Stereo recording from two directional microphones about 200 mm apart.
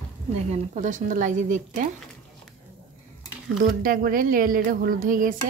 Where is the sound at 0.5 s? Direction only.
40° right (ahead or behind).